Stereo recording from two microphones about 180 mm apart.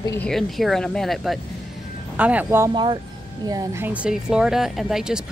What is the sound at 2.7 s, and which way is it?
A woman's voice, 25° right (ahead or behind).